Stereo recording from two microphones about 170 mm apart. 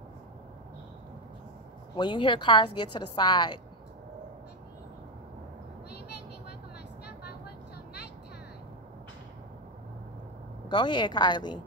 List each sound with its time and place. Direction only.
2.0 s a woman's voice: 25° left (ahead or behind)
7.1 s vehicle: 70° left (ahead or behind)
10.7 s a woman's voice: 25° left (ahead or behind)